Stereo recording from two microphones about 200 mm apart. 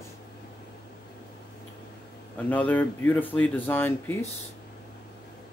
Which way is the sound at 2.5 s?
10° left (ahead or behind).